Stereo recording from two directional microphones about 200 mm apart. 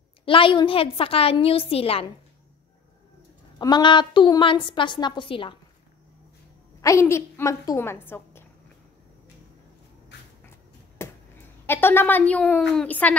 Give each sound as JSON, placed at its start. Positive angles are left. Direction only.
{"t": 0.2, "sound": "a woman's voice", "side_deg": 25}
{"t": 3.5, "sound": "a woman's voice", "side_deg": 20}
{"t": 6.8, "sound": "a woman's voice", "side_deg": 15}
{"t": 11.0, "sound": "a sound", "side_deg": 10}
{"t": 11.6, "sound": "a woman's voice", "side_deg": 10}